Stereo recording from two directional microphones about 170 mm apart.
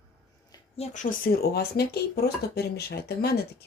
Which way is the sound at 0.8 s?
35° left (ahead or behind).